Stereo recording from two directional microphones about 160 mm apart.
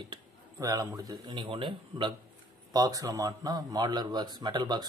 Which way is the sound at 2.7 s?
25° right (ahead or behind).